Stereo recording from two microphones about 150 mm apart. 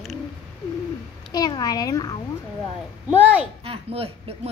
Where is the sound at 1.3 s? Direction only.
25° left (ahead or behind).